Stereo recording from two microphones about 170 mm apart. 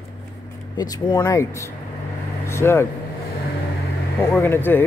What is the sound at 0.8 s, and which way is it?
Speech, 25° left (ahead or behind).